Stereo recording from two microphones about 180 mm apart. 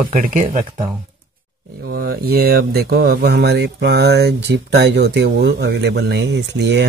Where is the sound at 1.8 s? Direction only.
55° right (ahead or behind).